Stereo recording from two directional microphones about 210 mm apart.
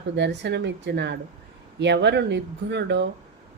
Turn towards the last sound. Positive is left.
turn(degrees=-55)  # may be behind; listen again after turning